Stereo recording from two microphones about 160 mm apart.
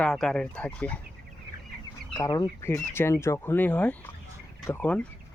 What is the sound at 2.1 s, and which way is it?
Speech, 20° left (ahead or behind).